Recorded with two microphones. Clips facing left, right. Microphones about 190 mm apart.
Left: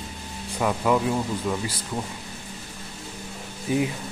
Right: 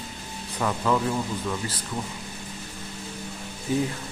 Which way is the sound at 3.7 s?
10° left (ahead or behind).